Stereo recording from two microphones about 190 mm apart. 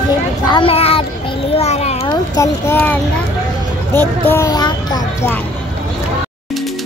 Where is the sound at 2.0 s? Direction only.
15° left (ahead or behind).